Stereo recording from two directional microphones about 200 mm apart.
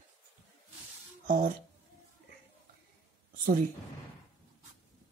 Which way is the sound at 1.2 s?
40° right (ahead or behind).